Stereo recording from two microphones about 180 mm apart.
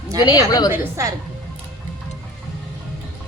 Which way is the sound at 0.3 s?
20° left (ahead or behind).